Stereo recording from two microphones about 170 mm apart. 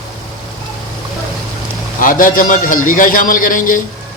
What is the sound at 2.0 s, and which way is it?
A man's voice, 55° left (ahead or behind).